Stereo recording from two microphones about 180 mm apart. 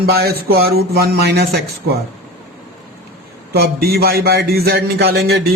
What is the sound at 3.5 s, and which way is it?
A man's voice, 60° right (ahead or behind).